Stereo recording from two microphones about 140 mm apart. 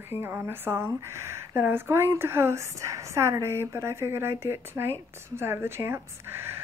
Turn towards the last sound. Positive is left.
turn(degrees=-15)  # may be behind; listen again after turning